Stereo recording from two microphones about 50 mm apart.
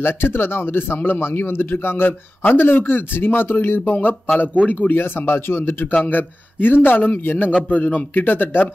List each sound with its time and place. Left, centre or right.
0.0 s speech: left
5.0 s speech: left